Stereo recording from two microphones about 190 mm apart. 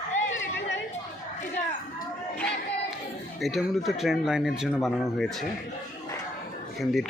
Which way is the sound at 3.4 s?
Centre (ahead or behind).